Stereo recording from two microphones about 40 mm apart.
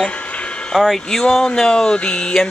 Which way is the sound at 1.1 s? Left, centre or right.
Centre.